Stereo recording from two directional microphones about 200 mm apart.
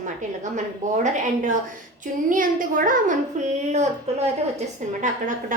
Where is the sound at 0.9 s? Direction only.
40° right (ahead or behind).